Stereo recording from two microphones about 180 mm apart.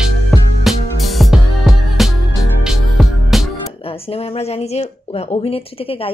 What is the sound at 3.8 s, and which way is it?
Speech, 30° left (ahead or behind).